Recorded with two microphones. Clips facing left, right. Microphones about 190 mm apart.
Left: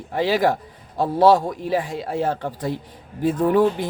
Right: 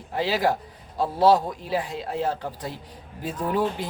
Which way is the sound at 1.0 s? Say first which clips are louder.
Left 3 dB; 50° left (ahead or behind).